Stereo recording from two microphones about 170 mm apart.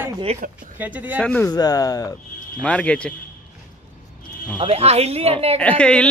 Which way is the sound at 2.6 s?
5° left (ahead or behind).